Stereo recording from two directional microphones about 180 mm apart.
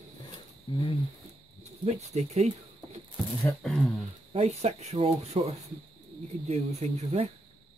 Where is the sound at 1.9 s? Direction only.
35° right (ahead or behind).